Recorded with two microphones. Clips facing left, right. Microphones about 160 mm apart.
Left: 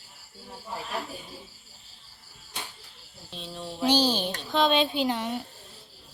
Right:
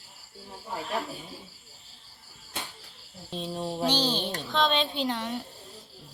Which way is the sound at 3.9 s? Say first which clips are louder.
Left 8 dB; 10° left (ahead or behind).